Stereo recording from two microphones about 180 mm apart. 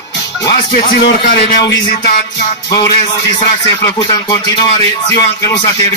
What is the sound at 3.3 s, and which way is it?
Speech, 25° left (ahead or behind).